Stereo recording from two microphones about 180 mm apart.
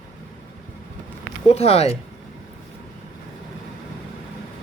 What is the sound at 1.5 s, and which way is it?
Speech, 35° left (ahead or behind).